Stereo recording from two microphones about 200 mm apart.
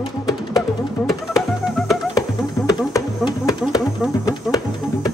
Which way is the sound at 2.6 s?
20° left (ahead or behind).